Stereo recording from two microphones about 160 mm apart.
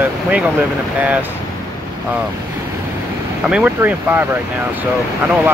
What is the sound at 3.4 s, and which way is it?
Speech, 5° right (ahead or behind).